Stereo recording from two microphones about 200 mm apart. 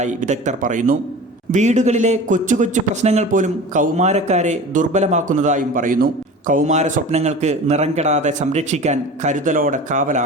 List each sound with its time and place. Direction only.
0.0 s a man's voice: 35° right (ahead or behind)